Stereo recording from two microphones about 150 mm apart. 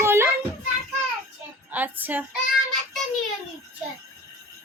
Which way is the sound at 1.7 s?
10° right (ahead or behind).